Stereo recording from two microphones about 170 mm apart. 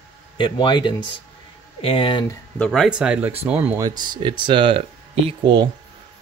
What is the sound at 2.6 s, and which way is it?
Speech, centre (ahead or behind).